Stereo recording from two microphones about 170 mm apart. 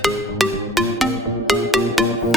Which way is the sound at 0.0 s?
Centre (ahead or behind).